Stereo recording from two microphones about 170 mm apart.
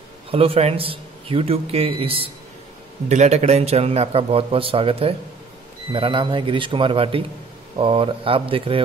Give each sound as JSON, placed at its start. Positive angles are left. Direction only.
{"t": 0.3, "sound": "a man's voice", "side_deg": -35}